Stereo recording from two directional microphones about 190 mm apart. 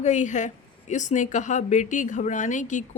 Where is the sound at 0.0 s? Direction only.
40° left (ahead or behind).